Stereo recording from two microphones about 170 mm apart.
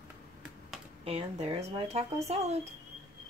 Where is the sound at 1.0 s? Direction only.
35° right (ahead or behind).